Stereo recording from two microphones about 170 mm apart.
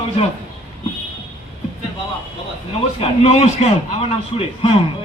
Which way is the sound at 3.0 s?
40° left (ahead or behind).